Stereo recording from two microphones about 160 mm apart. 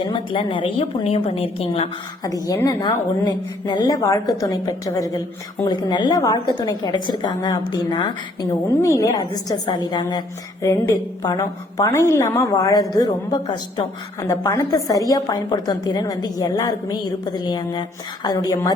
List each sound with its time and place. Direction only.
0.0 s a woman's voice: 30° left (ahead or behind)
2.2 s a woman's voice: 20° left (ahead or behind)